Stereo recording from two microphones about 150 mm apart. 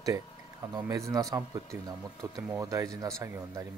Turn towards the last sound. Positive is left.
turn(degrees=-20)  # may be behind; listen again after turning